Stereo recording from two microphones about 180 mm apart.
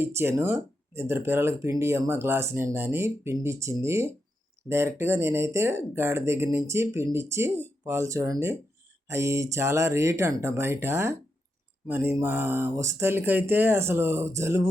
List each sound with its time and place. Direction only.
0.0 s speech: 15° right (ahead or behind)